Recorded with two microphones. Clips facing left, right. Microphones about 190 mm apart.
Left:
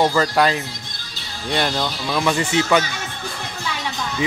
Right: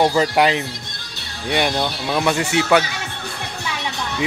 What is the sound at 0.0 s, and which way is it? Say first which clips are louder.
Speech: right 1 dB; 15° right (ahead or behind).